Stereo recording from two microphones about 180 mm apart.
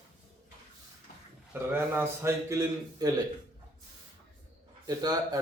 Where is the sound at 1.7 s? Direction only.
15° right (ahead or behind).